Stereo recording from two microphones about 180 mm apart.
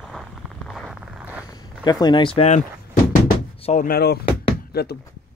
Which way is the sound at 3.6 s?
45° left (ahead or behind).